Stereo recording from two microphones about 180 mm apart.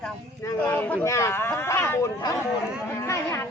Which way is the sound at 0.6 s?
10° left (ahead or behind).